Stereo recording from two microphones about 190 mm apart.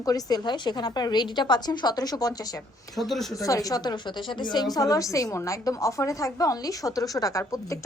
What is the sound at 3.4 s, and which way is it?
A woman's voice, 20° left (ahead or behind).